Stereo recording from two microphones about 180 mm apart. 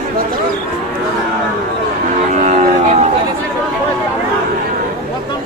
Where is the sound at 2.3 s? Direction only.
45° right (ahead or behind).